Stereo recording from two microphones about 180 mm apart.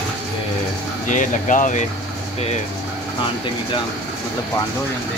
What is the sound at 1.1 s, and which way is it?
Speech, 45° left (ahead or behind).